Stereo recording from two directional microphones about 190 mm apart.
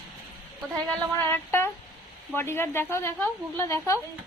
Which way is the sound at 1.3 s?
10° left (ahead or behind).